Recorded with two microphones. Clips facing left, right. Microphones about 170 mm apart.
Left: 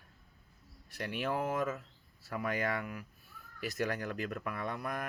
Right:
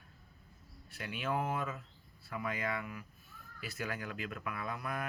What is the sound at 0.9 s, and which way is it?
Speech, 40° left (ahead or behind).